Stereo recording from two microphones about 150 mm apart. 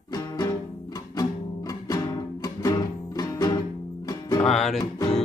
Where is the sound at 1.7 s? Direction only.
25° left (ahead or behind).